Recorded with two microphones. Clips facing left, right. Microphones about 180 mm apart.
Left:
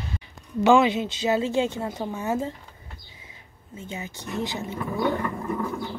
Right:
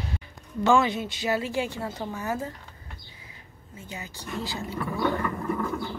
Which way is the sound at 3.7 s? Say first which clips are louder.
Left 4 dB; 25° left (ahead or behind).